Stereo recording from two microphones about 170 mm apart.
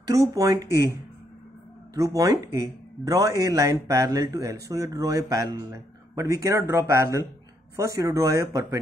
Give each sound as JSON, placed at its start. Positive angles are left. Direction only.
{"t": 0.1, "sound": "speech", "side_deg": -20}
{"t": 2.0, "sound": "speech", "side_deg": -20}